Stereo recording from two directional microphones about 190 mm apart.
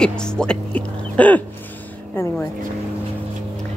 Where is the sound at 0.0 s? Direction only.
5° left (ahead or behind).